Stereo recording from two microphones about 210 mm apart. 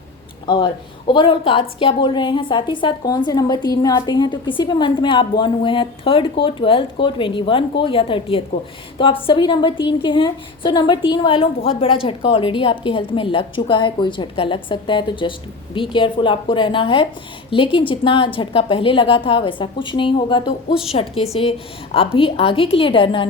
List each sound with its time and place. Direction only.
0.4 s a woman's voice: 25° left (ahead or behind)